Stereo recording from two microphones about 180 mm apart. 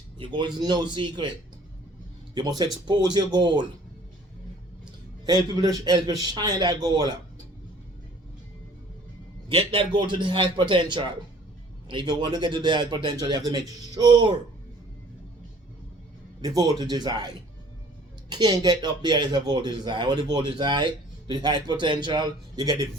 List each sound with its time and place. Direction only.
0.2 s speech: 25° right (ahead or behind)
2.8 s speech: 25° right (ahead or behind)
5.2 s speech: 20° right (ahead or behind)
9.6 s speech: 25° right (ahead or behind)
11.9 s speech: 25° right (ahead or behind)
16.7 s speech: 25° right (ahead or behind)